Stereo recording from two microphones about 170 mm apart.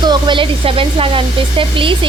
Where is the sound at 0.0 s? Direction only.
25° right (ahead or behind).